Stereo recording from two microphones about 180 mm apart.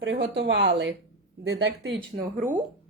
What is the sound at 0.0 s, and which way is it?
Speech, 80° right.